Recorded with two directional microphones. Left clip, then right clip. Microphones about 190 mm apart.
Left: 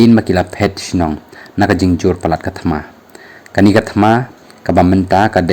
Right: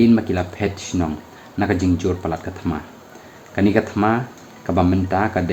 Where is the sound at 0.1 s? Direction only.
50° left (ahead or behind).